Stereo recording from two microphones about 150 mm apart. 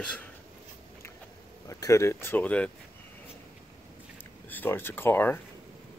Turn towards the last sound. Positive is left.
turn(degrees=15)  # may be behind; listen again after turning